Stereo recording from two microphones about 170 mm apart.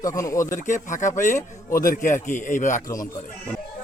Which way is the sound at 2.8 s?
20° left (ahead or behind).